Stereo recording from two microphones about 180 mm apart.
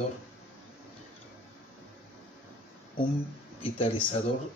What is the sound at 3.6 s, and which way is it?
Speech, 30° left (ahead or behind).